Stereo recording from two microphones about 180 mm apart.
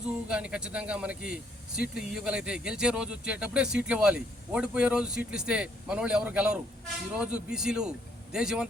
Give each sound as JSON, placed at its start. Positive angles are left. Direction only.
{"t": 0.0, "sound": "speech", "side_deg": -5}